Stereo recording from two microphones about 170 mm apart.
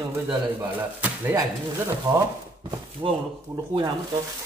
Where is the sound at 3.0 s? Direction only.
25° right (ahead or behind).